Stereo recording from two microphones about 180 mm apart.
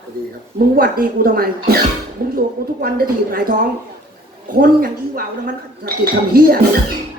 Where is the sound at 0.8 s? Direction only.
55° right (ahead or behind).